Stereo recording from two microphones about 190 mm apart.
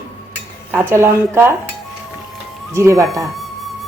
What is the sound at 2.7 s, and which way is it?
Speech, 15° right (ahead or behind).